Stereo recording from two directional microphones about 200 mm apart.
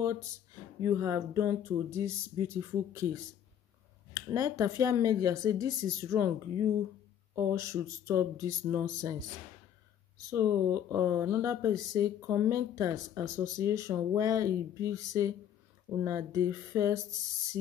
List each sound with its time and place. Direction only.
0.7 s speech: 15° right (ahead or behind)
4.3 s speech: 15° right (ahead or behind)
10.3 s speech: 15° right (ahead or behind)